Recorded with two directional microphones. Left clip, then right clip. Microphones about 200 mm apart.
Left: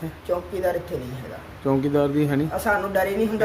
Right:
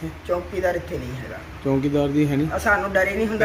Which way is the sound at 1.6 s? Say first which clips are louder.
Even; 10° left (ahead or behind).